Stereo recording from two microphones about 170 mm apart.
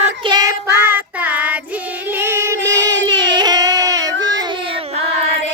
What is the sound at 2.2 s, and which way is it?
Music, 15° right (ahead or behind).